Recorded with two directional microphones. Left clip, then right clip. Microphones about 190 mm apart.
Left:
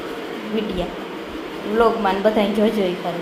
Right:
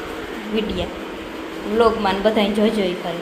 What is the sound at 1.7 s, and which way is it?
A woman's voice, centre (ahead or behind).